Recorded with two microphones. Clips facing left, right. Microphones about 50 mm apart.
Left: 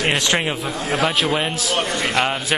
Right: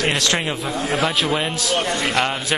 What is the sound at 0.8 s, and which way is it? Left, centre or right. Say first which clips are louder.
A man's voice: left 1 dB; centre.